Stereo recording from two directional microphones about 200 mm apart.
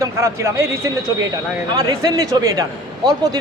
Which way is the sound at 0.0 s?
15° right (ahead or behind).